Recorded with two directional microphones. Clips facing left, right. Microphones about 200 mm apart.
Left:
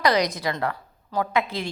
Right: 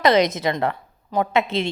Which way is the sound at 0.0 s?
25° right (ahead or behind).